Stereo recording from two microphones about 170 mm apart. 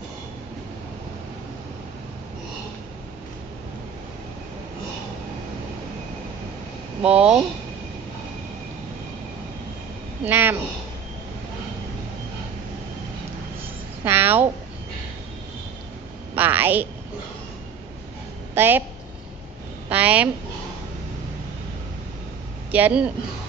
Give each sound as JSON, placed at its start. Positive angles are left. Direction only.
{"t": 7.0, "sound": "speech", "side_deg": -5}
{"t": 10.2, "sound": "speech", "side_deg": -10}
{"t": 14.0, "sound": "a woman's voice", "side_deg": -10}
{"t": 16.3, "sound": "a woman's voice", "side_deg": -10}
{"t": 18.5, "sound": "a woman's voice", "side_deg": -10}
{"t": 19.9, "sound": "speech", "side_deg": -10}
{"t": 22.7, "sound": "speech", "side_deg": -10}